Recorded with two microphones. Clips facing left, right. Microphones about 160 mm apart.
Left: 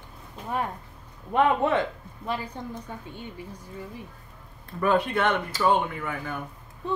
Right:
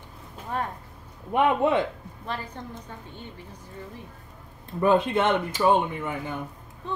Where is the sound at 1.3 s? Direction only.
15° right (ahead or behind).